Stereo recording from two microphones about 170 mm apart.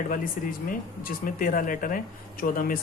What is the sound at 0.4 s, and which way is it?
Speech, 50° left (ahead or behind).